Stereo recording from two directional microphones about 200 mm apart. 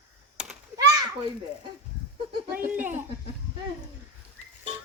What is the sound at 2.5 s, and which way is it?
Speech, 10° right (ahead or behind).